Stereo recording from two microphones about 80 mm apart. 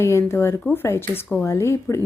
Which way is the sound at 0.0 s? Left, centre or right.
Left.